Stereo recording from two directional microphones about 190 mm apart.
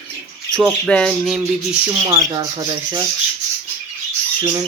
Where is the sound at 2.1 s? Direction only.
15° right (ahead or behind).